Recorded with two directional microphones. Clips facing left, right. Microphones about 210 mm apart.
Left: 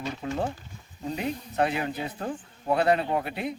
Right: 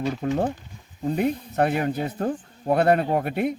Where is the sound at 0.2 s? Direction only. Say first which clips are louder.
Right 3 dB; 50° right (ahead or behind).